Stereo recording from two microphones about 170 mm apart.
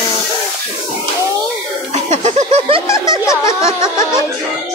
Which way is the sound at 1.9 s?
40° right (ahead or behind).